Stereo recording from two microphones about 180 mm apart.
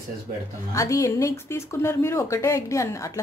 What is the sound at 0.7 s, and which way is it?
Speech, 15° left (ahead or behind).